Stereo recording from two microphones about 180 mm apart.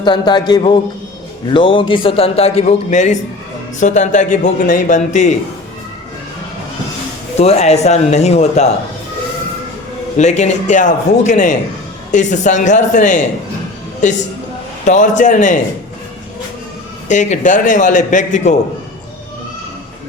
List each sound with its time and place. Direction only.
0.0 s a man's voice: 25° left (ahead or behind); by 5.3 s 40° left (ahead or behind)
7.3 s a man's voice: 35° left (ahead or behind)
10.2 s a man's voice: 40° left (ahead or behind)
17.1 s a man's voice: 40° left (ahead or behind)